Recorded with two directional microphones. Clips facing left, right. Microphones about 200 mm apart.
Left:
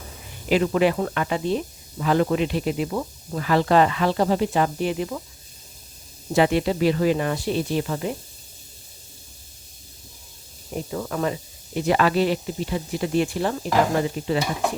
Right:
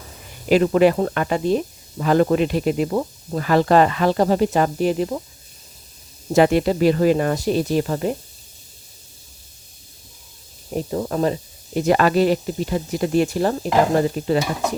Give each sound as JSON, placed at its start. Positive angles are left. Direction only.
{"t": 0.4, "sound": "speech", "side_deg": -40}
{"t": 6.3, "sound": "speech", "side_deg": -45}
{"t": 10.9, "sound": "speech", "side_deg": -30}